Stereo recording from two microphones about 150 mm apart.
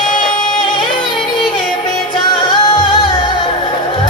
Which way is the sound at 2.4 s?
30° left (ahead or behind).